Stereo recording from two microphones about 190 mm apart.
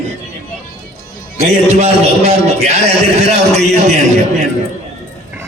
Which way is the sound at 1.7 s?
35° right (ahead or behind).